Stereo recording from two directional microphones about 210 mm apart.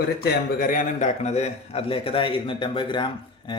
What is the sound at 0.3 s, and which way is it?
A man's voice, 40° left (ahead or behind).